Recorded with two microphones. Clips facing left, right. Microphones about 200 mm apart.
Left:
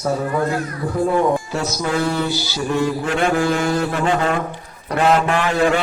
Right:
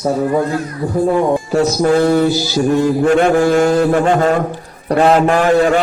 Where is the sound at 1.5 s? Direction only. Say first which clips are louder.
Right 9 dB; 40° right (ahead or behind).